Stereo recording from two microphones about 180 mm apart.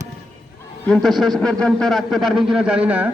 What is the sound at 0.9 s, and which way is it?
Speech, 5° left (ahead or behind).